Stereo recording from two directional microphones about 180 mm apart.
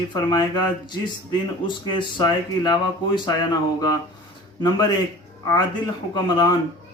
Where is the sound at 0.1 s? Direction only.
25° left (ahead or behind).